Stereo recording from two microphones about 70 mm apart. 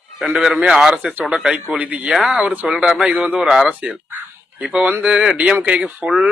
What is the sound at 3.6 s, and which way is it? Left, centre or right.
Speech, centre.